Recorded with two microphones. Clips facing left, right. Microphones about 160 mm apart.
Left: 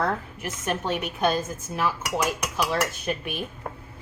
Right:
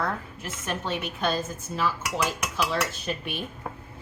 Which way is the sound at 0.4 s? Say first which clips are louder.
Left 4 dB; 15° left (ahead or behind).